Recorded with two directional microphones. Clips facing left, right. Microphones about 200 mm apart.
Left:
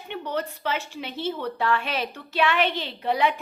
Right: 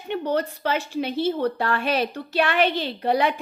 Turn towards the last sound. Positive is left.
turn(degrees=-40)  # may be behind; listen again after turning